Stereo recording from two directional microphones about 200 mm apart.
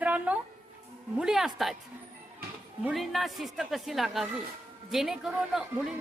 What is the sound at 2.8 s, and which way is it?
A man's voice, centre (ahead or behind).